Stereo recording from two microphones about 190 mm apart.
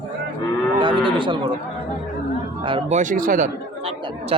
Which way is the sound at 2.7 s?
25° right (ahead or behind).